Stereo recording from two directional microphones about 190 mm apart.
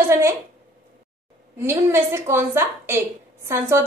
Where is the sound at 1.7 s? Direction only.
15° right (ahead or behind).